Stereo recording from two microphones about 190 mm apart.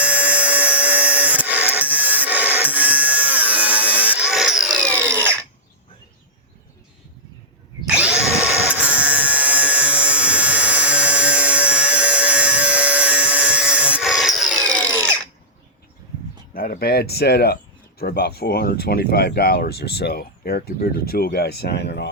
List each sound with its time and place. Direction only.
0.0 s a sound: 5° right (ahead or behind)
7.9 s tools: 5° right (ahead or behind)
16.6 s speech: 50° left (ahead or behind)